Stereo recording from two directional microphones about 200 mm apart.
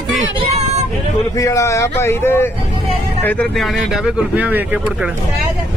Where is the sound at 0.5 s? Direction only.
35° right (ahead or behind).